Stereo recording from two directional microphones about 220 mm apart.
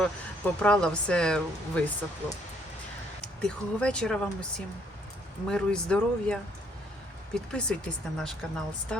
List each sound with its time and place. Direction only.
0.0 s speech: 5° left (ahead or behind)
3.4 s speech: 5° left (ahead or behind)
7.5 s speech: 5° left (ahead or behind)